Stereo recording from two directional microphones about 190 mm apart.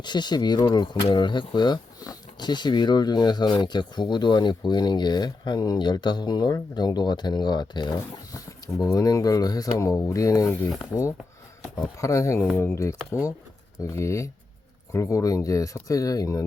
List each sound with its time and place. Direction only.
0.0 s speech: 25° left (ahead or behind)
10.7 s speech: centre (ahead or behind)
11.8 s speech: 15° left (ahead or behind)